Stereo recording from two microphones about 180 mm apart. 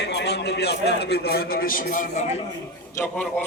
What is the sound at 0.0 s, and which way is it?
A man's voice, 70° left (ahead or behind).